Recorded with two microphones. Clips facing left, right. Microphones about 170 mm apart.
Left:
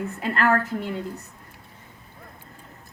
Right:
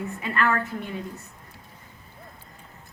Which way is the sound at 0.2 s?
65° left (ahead or behind).